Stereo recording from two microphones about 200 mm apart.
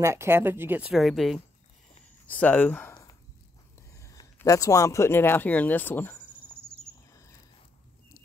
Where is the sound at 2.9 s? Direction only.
20° left (ahead or behind).